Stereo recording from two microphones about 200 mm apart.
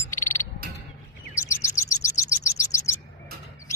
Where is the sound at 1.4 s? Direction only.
15° left (ahead or behind).